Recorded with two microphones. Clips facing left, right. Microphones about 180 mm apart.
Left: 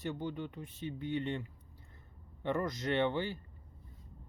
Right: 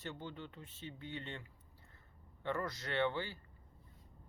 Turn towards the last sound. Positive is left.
turn(degrees=20)  # may be behind; listen again after turning